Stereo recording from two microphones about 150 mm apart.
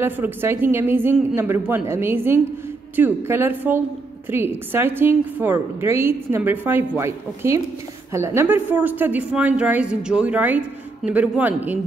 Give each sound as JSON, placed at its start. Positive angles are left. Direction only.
{"t": 0.0, "sound": "a woman's voice", "side_deg": -15}